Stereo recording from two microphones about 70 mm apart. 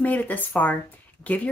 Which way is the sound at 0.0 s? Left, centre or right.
Left.